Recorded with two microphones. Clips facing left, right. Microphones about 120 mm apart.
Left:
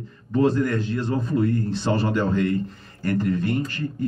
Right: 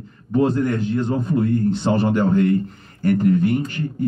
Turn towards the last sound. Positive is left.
turn(degrees=-20)  # may be behind; listen again after turning